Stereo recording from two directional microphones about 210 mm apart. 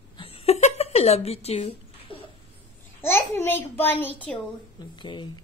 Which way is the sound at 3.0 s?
10° left (ahead or behind).